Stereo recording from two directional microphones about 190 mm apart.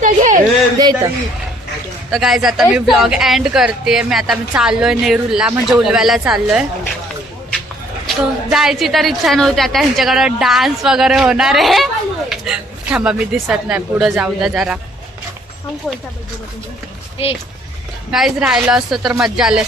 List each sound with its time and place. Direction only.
0.0 s a sound: 45° right (ahead or behind)
0.8 s speech: 20° right (ahead or behind)
2.0 s speech: centre (ahead or behind)
8.0 s speech: centre (ahead or behind)
18.1 s speech: centre (ahead or behind)